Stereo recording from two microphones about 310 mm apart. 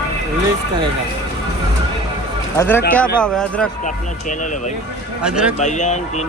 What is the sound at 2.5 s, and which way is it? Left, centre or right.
Speech, centre.